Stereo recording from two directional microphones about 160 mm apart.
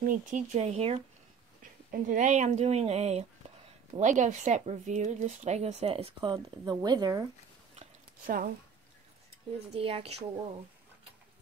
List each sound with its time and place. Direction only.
0.0 s speech: 55° right (ahead or behind); by 1.0 s 40° right (ahead or behind)
1.6 s speech: 55° right (ahead or behind); by 7.2 s 25° right (ahead or behind)
9.7 s speech: 40° right (ahead or behind)